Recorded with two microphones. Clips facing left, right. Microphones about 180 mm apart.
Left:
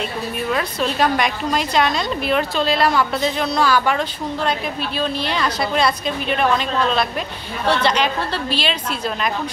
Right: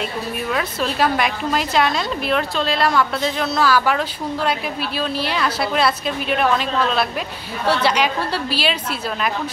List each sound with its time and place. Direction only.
0.5 s a woman's voice: centre (ahead or behind)